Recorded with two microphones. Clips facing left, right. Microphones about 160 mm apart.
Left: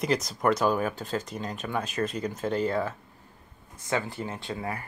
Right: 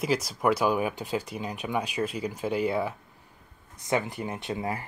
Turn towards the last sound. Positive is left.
turn(degrees=-20)  # may be behind; listen again after turning